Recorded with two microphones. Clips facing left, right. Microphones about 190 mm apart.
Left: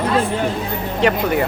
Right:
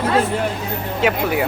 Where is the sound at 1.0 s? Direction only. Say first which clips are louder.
Left 2 dB; 5° right (ahead or behind).